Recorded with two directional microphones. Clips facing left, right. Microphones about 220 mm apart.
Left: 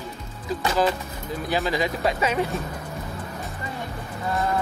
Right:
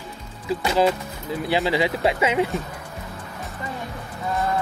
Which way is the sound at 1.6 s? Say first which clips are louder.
Right 3 dB; 10° right (ahead or behind).